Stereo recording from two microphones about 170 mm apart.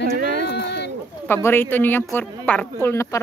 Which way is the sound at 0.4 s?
90° left.